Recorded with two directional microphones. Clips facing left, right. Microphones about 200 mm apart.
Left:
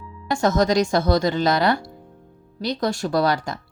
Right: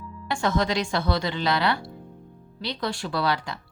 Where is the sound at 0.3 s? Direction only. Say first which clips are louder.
Left 6 dB; 45° left (ahead or behind).